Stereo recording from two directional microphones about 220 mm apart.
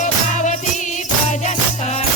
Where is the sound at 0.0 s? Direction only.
35° left (ahead or behind).